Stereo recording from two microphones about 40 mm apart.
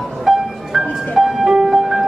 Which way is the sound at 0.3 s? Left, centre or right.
Centre.